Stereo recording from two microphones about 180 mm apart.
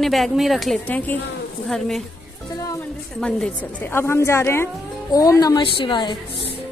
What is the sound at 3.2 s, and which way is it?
A woman's voice, 5° left (ahead or behind).